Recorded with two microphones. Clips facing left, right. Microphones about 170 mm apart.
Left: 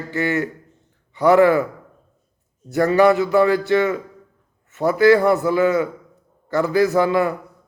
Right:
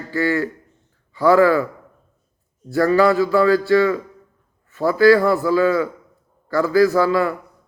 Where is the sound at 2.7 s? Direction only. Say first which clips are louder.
Left 1 dB; 20° left (ahead or behind).